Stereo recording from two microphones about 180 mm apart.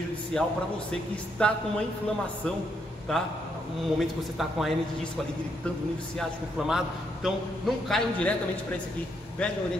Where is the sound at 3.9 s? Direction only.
Centre (ahead or behind).